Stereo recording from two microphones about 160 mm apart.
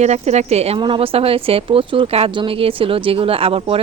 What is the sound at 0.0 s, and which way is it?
A woman's voice, 45° right (ahead or behind).